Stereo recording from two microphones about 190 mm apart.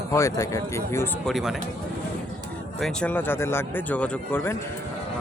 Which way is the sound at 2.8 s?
5° left (ahead or behind).